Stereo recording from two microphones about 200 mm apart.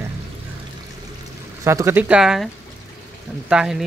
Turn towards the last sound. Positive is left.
turn(degrees=-5)  # may be behind; listen again after turning